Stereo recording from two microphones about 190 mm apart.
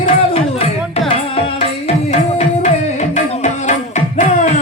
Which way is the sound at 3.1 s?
40° left (ahead or behind).